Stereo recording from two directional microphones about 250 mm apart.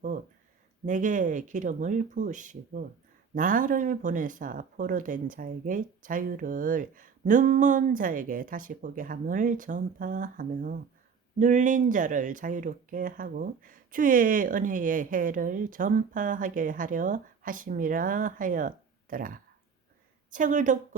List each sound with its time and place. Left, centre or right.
0.9 s speech: right